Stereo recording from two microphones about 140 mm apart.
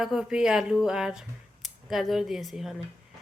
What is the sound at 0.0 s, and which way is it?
Speech, 5° right (ahead or behind).